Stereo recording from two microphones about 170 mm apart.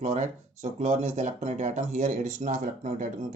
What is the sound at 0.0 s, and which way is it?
Speech, 45° right (ahead or behind).